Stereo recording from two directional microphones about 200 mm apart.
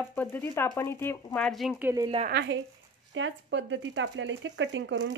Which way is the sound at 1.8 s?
10° right (ahead or behind).